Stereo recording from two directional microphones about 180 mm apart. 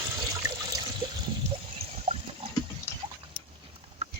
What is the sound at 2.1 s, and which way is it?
Water, 30° right (ahead or behind).